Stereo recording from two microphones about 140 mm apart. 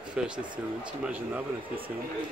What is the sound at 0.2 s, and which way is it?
Speech, 5° right (ahead or behind).